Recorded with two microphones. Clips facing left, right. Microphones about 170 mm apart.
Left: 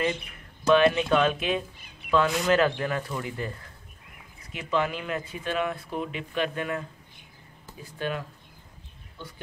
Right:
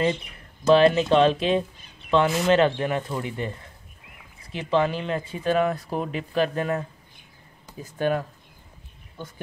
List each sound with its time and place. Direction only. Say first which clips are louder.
0.7 s speech: right 3 dB; 30° right (ahead or behind)
5.5 s speech: right 7 dB; 40° right (ahead or behind)
7.8 s speech: right 7 dB; 45° right (ahead or behind)